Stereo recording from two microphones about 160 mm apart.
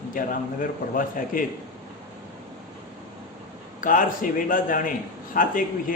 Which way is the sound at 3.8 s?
55° left (ahead or behind).